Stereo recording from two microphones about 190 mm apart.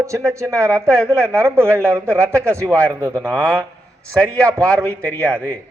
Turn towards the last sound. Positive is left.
turn(degrees=5)  # may be behind; listen again after turning